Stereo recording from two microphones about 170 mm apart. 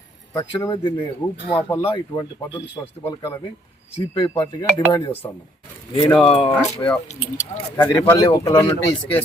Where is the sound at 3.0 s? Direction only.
15° left (ahead or behind).